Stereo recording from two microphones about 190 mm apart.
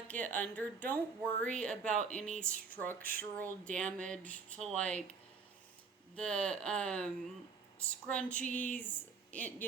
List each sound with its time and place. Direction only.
0.1 s speech: 10° left (ahead or behind)
1.9 s speech: 40° right (ahead or behind)
2.1 s speech: 5° left (ahead or behind)
6.1 s speech: 5° left (ahead or behind)